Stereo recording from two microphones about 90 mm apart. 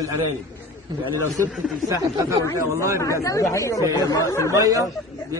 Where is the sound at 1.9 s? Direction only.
40° right (ahead or behind).